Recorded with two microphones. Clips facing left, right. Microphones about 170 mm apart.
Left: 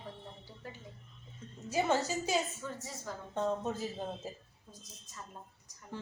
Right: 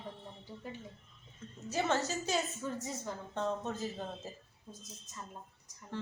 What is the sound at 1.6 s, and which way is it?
Speech, 10° left (ahead or behind).